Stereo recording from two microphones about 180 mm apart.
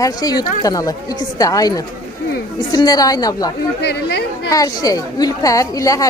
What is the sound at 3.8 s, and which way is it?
Speech, 65° left (ahead or behind).